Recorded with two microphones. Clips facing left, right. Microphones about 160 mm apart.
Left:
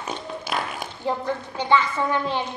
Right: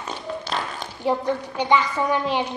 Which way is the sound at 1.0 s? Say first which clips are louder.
Right 4 dB; 15° right (ahead or behind).